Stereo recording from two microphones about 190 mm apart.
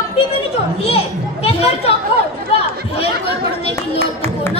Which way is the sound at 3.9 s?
10° left (ahead or behind).